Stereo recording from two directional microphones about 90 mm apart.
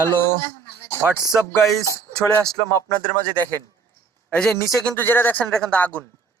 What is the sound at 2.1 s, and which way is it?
Speech, 5° left (ahead or behind).